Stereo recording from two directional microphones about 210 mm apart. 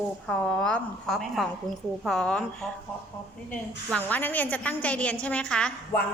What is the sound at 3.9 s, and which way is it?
A woman's voice, 5° left (ahead or behind).